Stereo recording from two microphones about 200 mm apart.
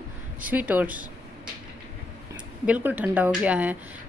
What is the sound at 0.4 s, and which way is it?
Speech, 10° right (ahead or behind).